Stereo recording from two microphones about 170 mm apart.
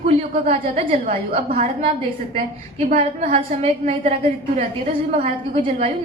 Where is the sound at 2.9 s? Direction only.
40° right (ahead or behind).